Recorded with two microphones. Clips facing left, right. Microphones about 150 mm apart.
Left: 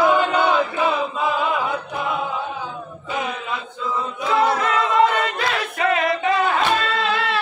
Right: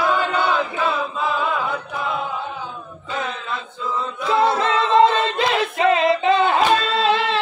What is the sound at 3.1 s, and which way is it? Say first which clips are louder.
Chant: left 1 dB; 10° left (ahead or behind).